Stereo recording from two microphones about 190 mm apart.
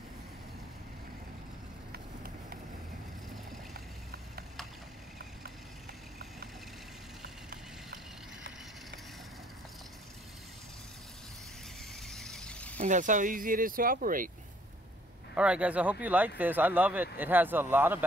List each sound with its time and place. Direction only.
1.9 s run: 50° right (ahead or behind)
3.7 s vehicle: 55° right (ahead or behind)
12.1 s squeal: centre (ahead or behind)
12.8 s speech: 40° right (ahead or behind)
15.3 s speech: 5° right (ahead or behind)